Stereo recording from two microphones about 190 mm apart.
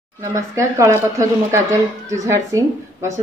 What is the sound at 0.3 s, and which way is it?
A woman's voice, 15° right (ahead or behind).